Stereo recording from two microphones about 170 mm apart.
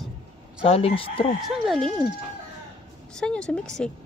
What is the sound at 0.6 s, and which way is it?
Speech, 35° left (ahead or behind).